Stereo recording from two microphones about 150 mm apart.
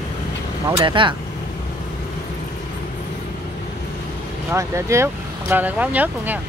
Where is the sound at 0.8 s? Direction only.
35° right (ahead or behind).